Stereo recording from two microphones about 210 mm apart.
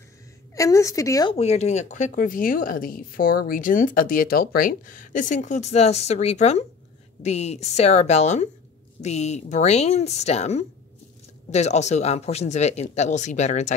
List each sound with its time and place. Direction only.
0.6 s a woman's voice: 15° left (ahead or behind)
1.3 s speech: 30° left (ahead or behind)